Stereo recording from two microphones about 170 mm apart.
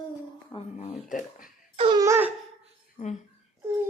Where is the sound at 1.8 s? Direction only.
30° right (ahead or behind).